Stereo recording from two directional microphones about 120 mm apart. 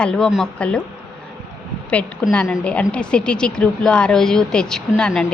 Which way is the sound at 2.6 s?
10° left (ahead or behind).